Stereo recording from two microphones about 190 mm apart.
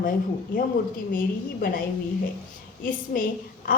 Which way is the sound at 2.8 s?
45° left (ahead or behind).